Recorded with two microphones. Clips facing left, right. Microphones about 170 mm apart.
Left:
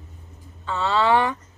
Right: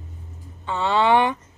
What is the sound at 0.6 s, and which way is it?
Speech, 20° right (ahead or behind).